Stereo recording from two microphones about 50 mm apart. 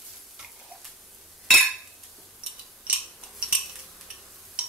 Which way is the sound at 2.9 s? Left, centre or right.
Right.